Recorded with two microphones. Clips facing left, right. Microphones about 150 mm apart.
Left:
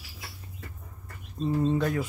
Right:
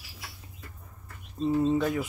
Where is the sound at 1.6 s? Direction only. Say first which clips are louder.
Even; 5° right (ahead or behind).